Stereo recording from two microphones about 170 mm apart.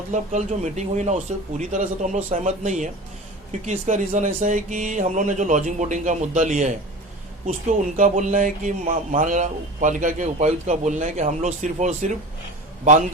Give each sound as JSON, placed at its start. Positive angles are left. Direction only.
{"t": 0.1, "sound": "a man's voice", "side_deg": -45}